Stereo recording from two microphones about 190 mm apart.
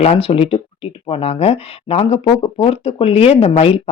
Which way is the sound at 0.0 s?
30° left (ahead or behind).